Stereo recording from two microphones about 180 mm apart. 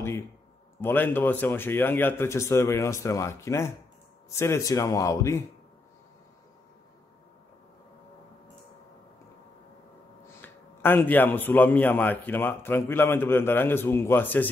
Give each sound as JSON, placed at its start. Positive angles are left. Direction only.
{"t": 0.7, "sound": "a man's voice", "side_deg": 10}
{"t": 10.4, "sound": "a man's voice", "side_deg": 10}